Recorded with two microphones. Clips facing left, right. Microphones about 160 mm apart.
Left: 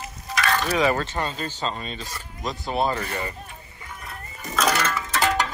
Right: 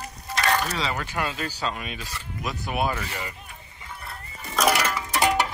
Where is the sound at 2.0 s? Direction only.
40° left (ahead or behind).